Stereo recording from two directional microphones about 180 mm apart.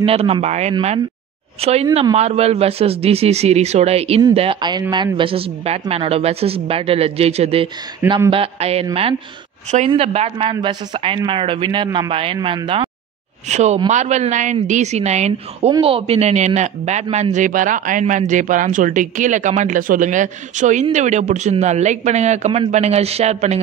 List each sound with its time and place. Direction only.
0.0 s a woman's voice: 35° right (ahead or behind)
13.5 s a man's voice: 40° right (ahead or behind)